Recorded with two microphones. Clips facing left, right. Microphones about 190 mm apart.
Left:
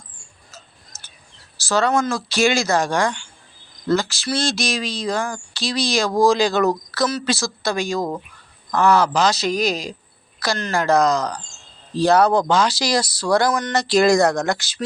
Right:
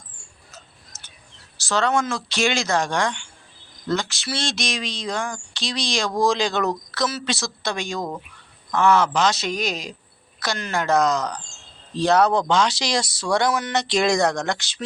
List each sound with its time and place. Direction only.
1.6 s speech: 5° left (ahead or behind)
8.8 s speech: 35° left (ahead or behind)
9.1 s speech: centre (ahead or behind)